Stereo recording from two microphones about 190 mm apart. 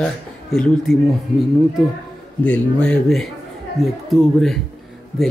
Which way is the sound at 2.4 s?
5° left (ahead or behind).